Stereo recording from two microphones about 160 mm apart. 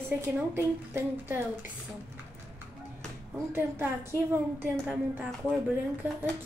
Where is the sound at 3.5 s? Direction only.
15° right (ahead or behind).